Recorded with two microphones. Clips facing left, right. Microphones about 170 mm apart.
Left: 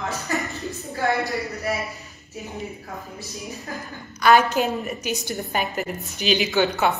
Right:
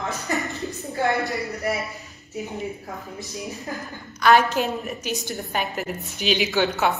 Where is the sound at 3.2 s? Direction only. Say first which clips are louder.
Right 2 dB; 20° right (ahead or behind).